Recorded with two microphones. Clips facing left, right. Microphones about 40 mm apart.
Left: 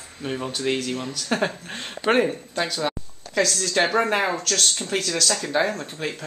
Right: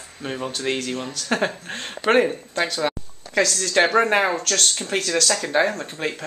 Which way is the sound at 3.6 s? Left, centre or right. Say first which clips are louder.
Right 5 dB; right.